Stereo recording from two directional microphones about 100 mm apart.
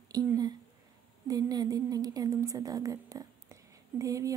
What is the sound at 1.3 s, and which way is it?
A woman's voice, 40° right (ahead or behind).